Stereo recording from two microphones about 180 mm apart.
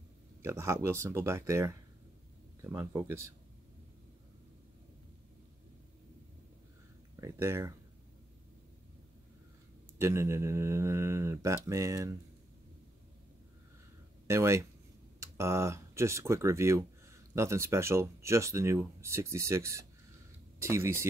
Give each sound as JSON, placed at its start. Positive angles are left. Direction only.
{"t": 0.4, "sound": "speech", "side_deg": -15}
{"t": 7.2, "sound": "speech", "side_deg": -15}
{"t": 9.9, "sound": "speech", "side_deg": -15}
{"t": 14.2, "sound": "speech", "side_deg": -15}